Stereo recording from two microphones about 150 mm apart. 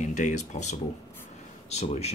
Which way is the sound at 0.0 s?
55° left (ahead or behind).